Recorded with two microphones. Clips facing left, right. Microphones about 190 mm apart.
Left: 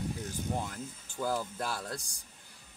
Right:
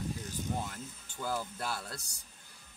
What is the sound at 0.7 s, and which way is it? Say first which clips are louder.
Speech: left 3 dB; 40° left (ahead or behind).